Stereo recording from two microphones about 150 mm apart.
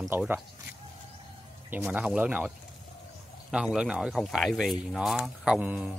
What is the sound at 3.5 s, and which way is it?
Speech, 5° right (ahead or behind).